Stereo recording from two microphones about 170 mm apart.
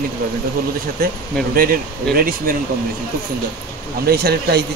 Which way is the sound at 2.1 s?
60° right (ahead or behind).